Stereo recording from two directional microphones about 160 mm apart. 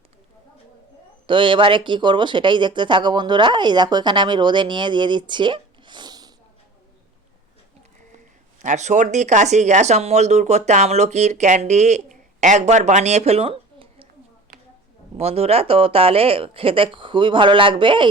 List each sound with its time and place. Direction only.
1.3 s speech: 30° right (ahead or behind)
8.6 s speech: 50° right (ahead or behind)
15.2 s speech: 40° right (ahead or behind)